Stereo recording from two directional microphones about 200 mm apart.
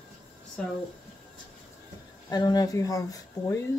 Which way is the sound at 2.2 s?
20° left (ahead or behind).